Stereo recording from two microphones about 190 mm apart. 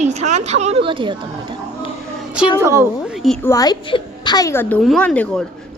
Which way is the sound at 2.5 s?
15° right (ahead or behind).